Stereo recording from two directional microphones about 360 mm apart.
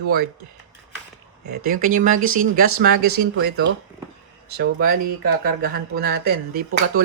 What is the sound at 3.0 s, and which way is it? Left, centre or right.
Speech, right.